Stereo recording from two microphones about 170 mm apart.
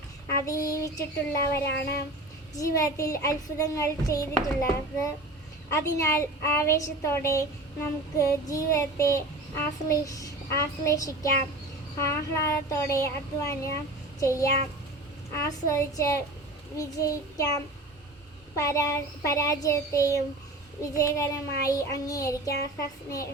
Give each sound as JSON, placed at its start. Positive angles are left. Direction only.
{"t": 0.3, "sound": "a woman's voice", "side_deg": 20}
{"t": 3.0, "sound": "child singing", "side_deg": 20}
{"t": 5.7, "sound": "a woman's voice", "side_deg": 15}
{"t": 14.2, "sound": "child singing", "side_deg": 20}
{"t": 15.3, "sound": "a woman's voice", "side_deg": 15}
{"t": 16.7, "sound": "child singing", "side_deg": 20}